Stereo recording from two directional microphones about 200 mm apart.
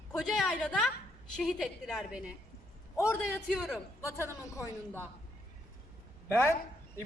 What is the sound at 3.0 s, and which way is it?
Speech, 10° left (ahead or behind).